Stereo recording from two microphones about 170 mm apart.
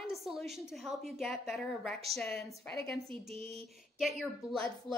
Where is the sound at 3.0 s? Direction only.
35° right (ahead or behind).